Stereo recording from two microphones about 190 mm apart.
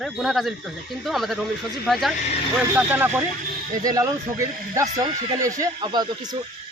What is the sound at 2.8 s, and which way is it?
Speech, 10° right (ahead or behind).